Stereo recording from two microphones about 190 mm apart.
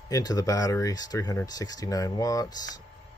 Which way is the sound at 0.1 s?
20° left (ahead or behind).